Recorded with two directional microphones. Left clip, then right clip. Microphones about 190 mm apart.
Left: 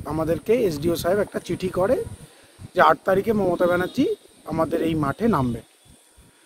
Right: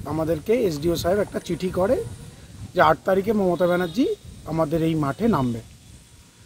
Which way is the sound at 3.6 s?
15° left (ahead or behind).